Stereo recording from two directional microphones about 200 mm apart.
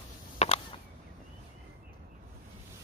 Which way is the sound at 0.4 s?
35° left (ahead or behind).